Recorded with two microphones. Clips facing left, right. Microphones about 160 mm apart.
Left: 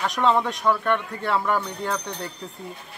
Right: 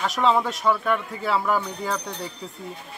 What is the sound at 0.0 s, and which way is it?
Speech, centre (ahead or behind).